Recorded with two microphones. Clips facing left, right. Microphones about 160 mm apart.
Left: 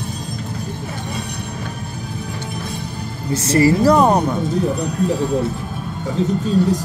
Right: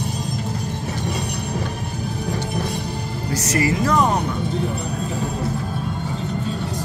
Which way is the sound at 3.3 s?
30° left (ahead or behind).